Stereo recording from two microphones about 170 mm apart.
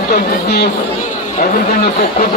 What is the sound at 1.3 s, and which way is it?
Speech, 50° left (ahead or behind).